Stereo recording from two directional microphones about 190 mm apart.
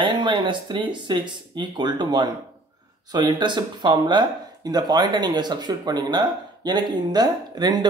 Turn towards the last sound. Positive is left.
turn(degrees=-20)  # may be behind; listen again after turning